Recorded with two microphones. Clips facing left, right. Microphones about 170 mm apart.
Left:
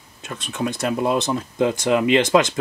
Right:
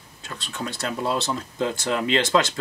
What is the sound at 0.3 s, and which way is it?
Speech, 20° left (ahead or behind).